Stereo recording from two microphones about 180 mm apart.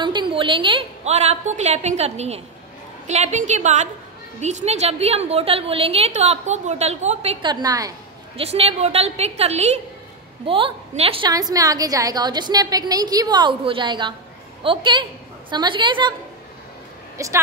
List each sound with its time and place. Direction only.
0.0 s a woman's voice: 25° right (ahead or behind)
7.6 s a woman's voice: 20° right (ahead or behind)
8.4 s a woman's voice: 35° right (ahead or behind)
17.2 s a woman's voice: 15° right (ahead or behind)